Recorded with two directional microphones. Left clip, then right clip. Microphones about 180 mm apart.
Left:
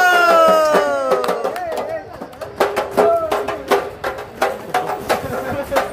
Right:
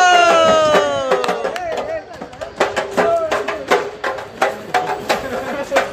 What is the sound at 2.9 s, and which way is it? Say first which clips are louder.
Music: left 1 dB; 20° right (ahead or behind).